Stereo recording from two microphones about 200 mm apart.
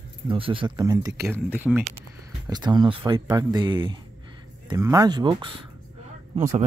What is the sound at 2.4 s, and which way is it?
Speech, 20° right (ahead or behind).